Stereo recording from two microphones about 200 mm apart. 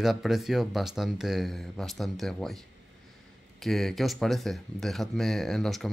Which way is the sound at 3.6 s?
Centre (ahead or behind).